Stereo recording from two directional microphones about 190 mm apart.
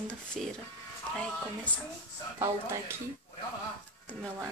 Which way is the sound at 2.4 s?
15° right (ahead or behind).